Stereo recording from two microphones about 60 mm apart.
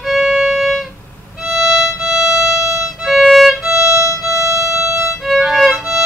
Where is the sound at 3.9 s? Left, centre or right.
Right.